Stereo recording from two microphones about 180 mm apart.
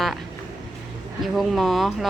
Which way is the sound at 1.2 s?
Centre (ahead or behind).